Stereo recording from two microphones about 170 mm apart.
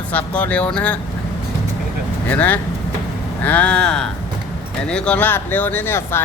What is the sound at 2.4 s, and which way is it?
Speech, 10° left (ahead or behind).